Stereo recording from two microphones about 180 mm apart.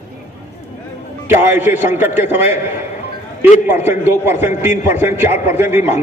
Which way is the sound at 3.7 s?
10° right (ahead or behind).